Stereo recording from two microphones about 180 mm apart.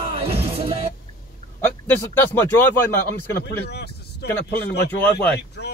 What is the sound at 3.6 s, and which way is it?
Speech, 65° left (ahead or behind).